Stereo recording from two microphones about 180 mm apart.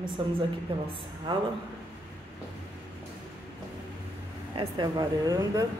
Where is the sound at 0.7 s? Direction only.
30° right (ahead or behind).